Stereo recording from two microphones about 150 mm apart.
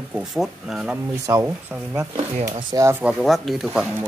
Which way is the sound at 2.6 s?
25° right (ahead or behind).